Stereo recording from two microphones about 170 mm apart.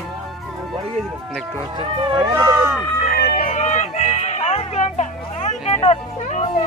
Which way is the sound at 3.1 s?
60° left (ahead or behind).